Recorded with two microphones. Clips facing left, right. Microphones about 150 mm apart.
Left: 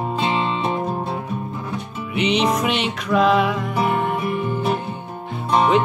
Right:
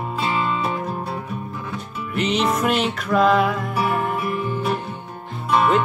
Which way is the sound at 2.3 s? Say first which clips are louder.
Right 1 dB; centre (ahead or behind).